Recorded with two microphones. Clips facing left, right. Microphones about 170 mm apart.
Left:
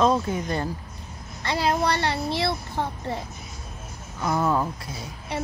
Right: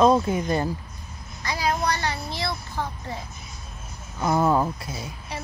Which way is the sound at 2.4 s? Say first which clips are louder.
Left 3 dB; 25° left (ahead or behind).